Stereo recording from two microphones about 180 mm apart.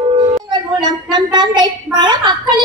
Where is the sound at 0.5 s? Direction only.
25° right (ahead or behind).